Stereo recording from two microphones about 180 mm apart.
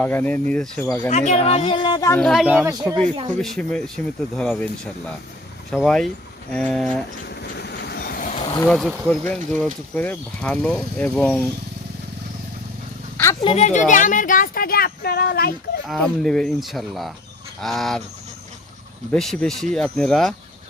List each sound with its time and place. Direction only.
0.0 s speech: 10° left (ahead or behind)
1.1 s speech: 40° left (ahead or behind); by 2.1 s 20° left (ahead or behind)
2.1 s speech: centre (ahead or behind)
3.4 s speech: 5° left (ahead or behind)
7.6 s vehicle: 65° left (ahead or behind)
8.6 s speech: 5° left (ahead or behind)
13.4 s speech: 35° left (ahead or behind); by 15.5 s 60° left (ahead or behind)
15.9 s speech: 5° left (ahead or behind)
19.1 s speech: 5° left (ahead or behind)